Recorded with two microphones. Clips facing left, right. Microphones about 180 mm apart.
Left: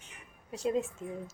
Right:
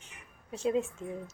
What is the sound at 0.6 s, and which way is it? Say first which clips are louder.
Speech: right 1 dB; centre (ahead or behind).